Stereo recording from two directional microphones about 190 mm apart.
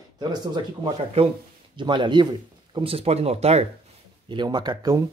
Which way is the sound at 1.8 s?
25° right (ahead or behind).